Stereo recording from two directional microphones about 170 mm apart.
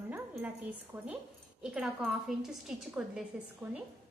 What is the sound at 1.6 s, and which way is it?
A woman's voice, 5° right (ahead or behind).